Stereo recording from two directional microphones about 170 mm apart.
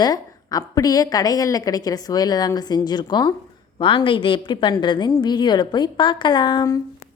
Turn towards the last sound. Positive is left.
turn(degrees=25)  # may be behind; listen again after turning